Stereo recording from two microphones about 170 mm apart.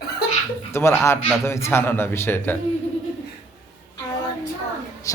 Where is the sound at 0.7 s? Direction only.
15° left (ahead or behind).